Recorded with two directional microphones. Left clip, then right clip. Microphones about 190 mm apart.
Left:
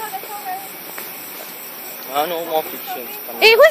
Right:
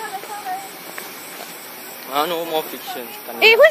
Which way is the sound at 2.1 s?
45° right (ahead or behind).